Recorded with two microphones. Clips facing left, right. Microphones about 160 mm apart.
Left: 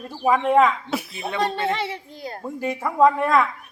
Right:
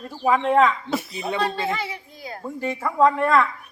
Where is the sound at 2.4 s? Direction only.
10° left (ahead or behind).